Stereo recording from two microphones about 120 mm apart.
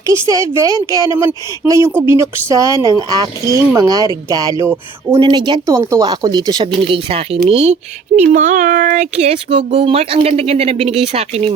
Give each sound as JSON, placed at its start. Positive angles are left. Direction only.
{"t": 0.1, "sound": "speech", "side_deg": -25}
{"t": 5.6, "sound": "speech", "side_deg": -25}
{"t": 6.8, "sound": "speech", "side_deg": -50}